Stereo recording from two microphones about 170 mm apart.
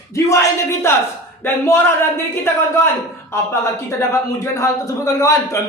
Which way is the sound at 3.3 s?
15° left (ahead or behind).